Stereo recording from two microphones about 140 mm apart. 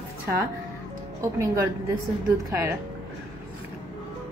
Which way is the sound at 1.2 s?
25° right (ahead or behind).